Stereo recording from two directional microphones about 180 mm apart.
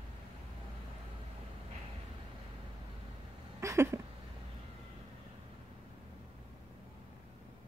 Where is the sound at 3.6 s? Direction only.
15° right (ahead or behind).